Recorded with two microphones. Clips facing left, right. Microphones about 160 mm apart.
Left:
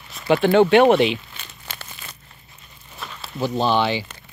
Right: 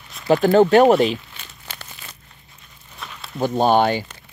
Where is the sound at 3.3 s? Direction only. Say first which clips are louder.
Right 3 dB; 50° right (ahead or behind).